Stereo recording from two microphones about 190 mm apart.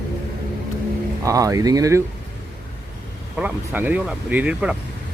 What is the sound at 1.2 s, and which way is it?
Speech, 15° right (ahead or behind).